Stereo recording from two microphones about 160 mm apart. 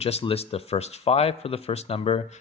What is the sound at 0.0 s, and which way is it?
Speech, 40° left (ahead or behind).